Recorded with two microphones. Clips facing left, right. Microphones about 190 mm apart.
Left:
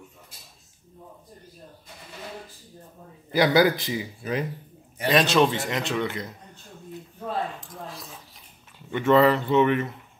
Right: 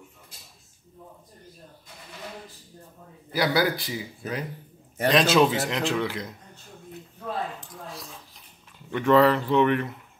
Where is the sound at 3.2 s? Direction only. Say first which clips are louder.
Left 4 dB; 20° left (ahead or behind).